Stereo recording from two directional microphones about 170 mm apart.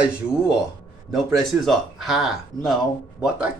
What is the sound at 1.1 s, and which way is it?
Speech, centre (ahead or behind).